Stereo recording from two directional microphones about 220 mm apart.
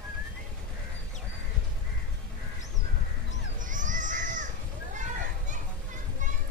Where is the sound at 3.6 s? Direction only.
35° right (ahead or behind).